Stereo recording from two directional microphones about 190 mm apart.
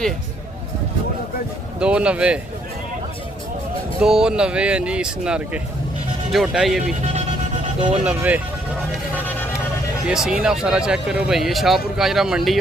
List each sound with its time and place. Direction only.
1.8 s speech: 5° right (ahead or behind)
4.0 s speech: 5° right (ahead or behind)
7.0 s vehicle: 35° right (ahead or behind)
8.0 s speech: 10° right (ahead or behind)
10.0 s speech: 5° right (ahead or behind)